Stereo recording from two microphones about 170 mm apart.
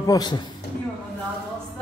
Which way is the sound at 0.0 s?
25° left (ahead or behind).